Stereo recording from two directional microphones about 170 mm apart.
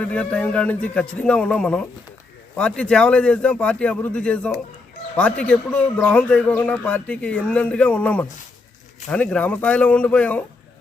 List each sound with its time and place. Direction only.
0.0 s speech: 5° left (ahead or behind)